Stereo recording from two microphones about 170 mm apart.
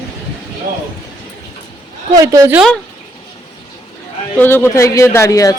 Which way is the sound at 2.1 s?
20° right (ahead or behind).